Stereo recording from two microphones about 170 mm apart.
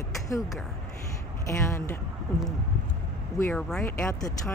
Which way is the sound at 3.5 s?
10° left (ahead or behind).